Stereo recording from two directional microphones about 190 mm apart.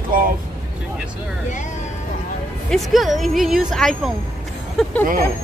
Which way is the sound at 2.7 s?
Centre (ahead or behind).